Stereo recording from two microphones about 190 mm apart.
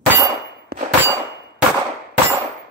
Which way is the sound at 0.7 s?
55° right (ahead or behind).